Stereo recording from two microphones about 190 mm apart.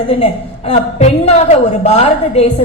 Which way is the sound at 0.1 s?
30° left (ahead or behind).